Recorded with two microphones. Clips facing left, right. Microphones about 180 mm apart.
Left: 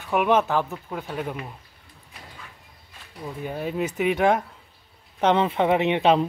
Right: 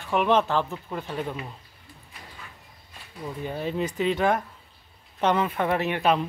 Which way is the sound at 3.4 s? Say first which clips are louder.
Left 1 dB; 5° left (ahead or behind).